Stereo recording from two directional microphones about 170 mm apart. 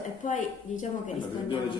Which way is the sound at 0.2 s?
45° left (ahead or behind).